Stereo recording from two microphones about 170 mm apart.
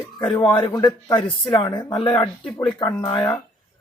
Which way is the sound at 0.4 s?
30° left (ahead or behind).